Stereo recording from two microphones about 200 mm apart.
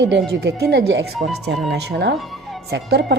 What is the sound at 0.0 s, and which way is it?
Speech, 55° right (ahead or behind).